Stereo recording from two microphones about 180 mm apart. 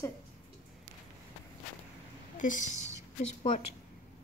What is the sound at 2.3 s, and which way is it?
Speech, 45° left (ahead or behind).